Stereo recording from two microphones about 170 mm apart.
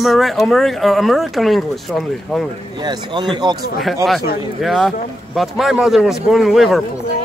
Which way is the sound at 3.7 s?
Centre (ahead or behind).